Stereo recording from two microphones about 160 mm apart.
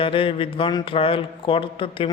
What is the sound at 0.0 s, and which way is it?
Speech, 35° left (ahead or behind).